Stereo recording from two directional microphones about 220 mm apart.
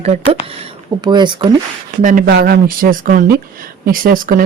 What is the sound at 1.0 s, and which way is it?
Speech, 20° right (ahead or behind).